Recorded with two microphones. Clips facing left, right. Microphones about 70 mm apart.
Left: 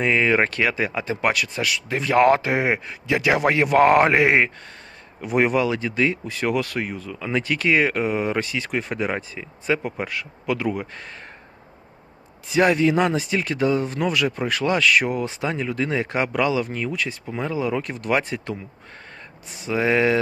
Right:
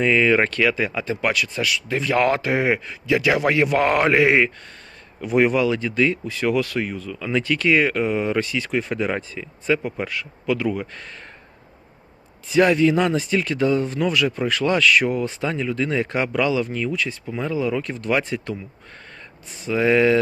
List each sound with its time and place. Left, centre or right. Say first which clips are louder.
0.0 s speech: right 2 dB; left
12.5 s speech: right 2 dB; left
19.6 s speech: right 2 dB; left